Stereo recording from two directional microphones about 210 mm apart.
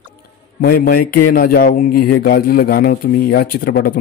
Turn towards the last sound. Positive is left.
turn(degrees=45)  # may be behind; listen again after turning